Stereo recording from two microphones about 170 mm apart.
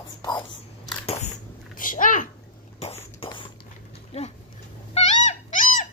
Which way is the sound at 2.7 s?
40° left (ahead or behind).